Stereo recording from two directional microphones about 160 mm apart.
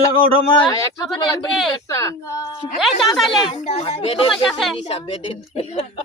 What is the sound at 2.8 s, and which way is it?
Speech, centre (ahead or behind).